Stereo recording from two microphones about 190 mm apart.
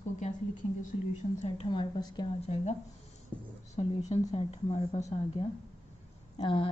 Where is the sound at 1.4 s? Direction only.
30° left (ahead or behind).